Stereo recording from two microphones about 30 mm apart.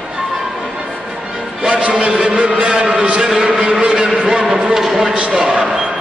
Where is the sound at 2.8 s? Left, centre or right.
Right.